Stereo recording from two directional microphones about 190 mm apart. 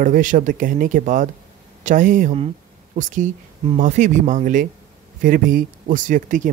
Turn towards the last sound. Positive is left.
turn(degrees=-45)  # may be behind; listen again after turning